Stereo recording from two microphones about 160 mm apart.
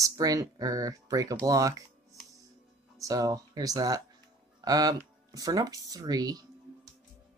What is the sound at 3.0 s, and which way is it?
Speech, 20° right (ahead or behind).